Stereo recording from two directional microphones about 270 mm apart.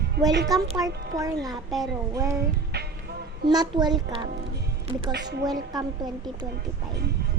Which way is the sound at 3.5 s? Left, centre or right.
Centre.